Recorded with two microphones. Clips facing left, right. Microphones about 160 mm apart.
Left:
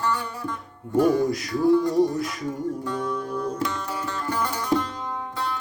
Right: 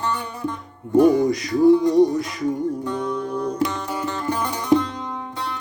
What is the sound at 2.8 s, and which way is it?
Music, 20° right (ahead or behind).